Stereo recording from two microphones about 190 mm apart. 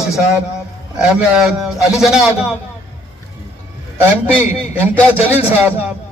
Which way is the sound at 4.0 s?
10° right (ahead or behind).